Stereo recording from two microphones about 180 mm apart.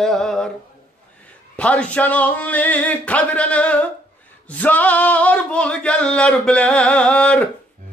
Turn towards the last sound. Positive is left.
turn(degrees=5)  # may be behind; listen again after turning